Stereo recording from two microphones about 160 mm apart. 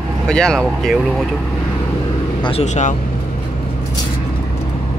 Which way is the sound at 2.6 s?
45° left (ahead or behind).